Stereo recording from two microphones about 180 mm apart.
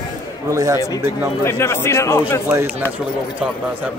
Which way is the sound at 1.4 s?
15° left (ahead or behind).